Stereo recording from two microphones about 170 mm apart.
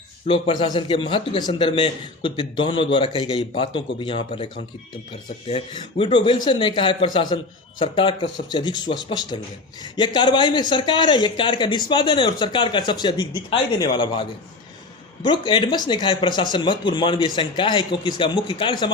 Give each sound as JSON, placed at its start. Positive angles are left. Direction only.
{"t": 0.3, "sound": "speech", "side_deg": 30}
{"t": 5.5, "sound": "speech", "side_deg": 35}